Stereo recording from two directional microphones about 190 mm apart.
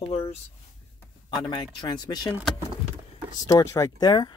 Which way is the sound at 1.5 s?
25° left (ahead or behind).